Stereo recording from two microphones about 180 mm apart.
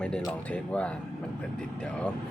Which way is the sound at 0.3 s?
5° left (ahead or behind).